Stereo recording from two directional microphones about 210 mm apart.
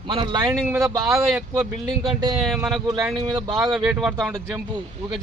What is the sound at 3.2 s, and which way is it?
Speech, 20° right (ahead or behind).